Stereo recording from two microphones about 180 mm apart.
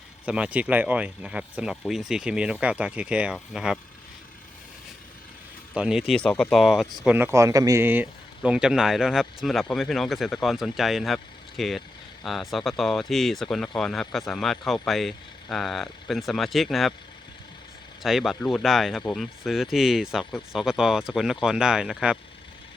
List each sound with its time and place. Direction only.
0.3 s speech: 5° right (ahead or behind)
5.7 s speech: 5° right (ahead or behind)
18.0 s speech: centre (ahead or behind)